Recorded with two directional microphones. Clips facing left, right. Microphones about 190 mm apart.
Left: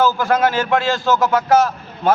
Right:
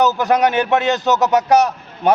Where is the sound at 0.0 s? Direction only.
20° right (ahead or behind).